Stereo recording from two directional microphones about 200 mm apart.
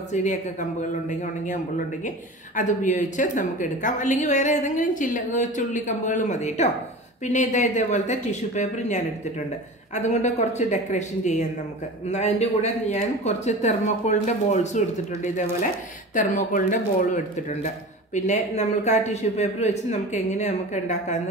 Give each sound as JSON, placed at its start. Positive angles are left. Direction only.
{"t": 0.1, "sound": "speech", "side_deg": 40}
{"t": 2.0, "sound": "speech", "side_deg": 40}
{"t": 16.2, "sound": "speech", "side_deg": 40}